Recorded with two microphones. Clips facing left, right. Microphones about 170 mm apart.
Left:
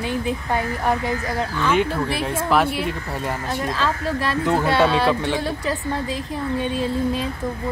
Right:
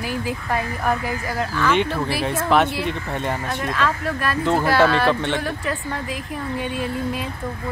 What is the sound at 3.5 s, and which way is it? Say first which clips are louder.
Speech: left 1 dB; 30° left (ahead or behind).